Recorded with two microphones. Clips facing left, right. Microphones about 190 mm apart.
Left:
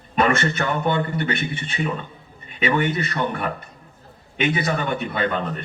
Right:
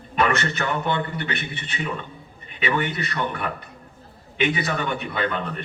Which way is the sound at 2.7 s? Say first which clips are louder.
Left 4 dB; 45° left (ahead or behind).